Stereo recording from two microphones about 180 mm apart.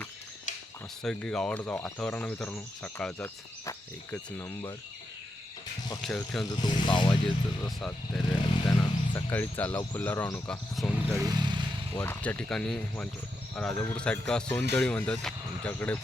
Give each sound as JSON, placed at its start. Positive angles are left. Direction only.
{"t": 1.0, "sound": "speech", "side_deg": 5}
{"t": 6.0, "sound": "speech", "side_deg": 0}
{"t": 6.4, "sound": "speech", "side_deg": 25}
{"t": 7.6, "sound": "speech", "side_deg": 5}
{"t": 8.4, "sound": "a sound", "side_deg": 20}
{"t": 9.3, "sound": "speech", "side_deg": 10}
{"t": 11.2, "sound": "vehicle", "side_deg": -25}
{"t": 11.9, "sound": "speech", "side_deg": 10}